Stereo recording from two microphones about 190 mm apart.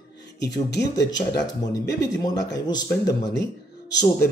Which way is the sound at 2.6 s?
20° left (ahead or behind).